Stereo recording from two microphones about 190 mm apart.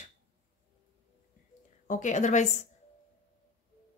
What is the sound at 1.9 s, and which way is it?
Speech, 40° left (ahead or behind).